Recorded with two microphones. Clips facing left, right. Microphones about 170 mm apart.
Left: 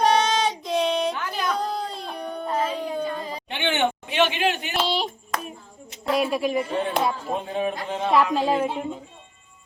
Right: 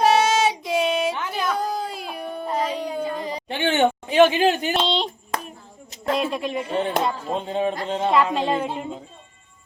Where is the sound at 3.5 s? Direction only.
40° right (ahead or behind).